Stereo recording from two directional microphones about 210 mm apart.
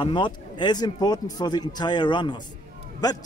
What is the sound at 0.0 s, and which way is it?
A man's voice, 20° left (ahead or behind).